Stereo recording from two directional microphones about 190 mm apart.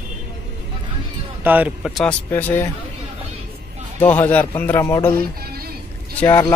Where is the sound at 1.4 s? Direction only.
10° right (ahead or behind).